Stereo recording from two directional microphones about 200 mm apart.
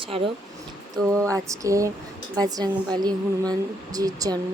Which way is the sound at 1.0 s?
15° right (ahead or behind).